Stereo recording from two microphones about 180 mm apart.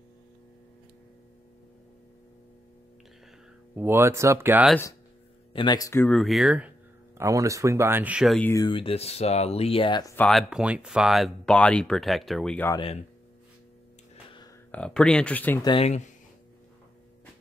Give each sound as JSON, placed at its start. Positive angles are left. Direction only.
{"t": 3.7, "sound": "speech", "side_deg": -10}
{"t": 5.5, "sound": "speech", "side_deg": 25}
{"t": 6.0, "sound": "speech", "side_deg": 0}
{"t": 7.2, "sound": "speech", "side_deg": -15}
{"t": 8.4, "sound": "speech", "side_deg": 15}
{"t": 8.6, "sound": "speech", "side_deg": 30}
{"t": 10.1, "sound": "speech", "side_deg": 5}
{"t": 12.7, "sound": "speech", "side_deg": 30}
{"t": 14.7, "sound": "speech", "side_deg": 5}
{"t": 15.6, "sound": "speech", "side_deg": 30}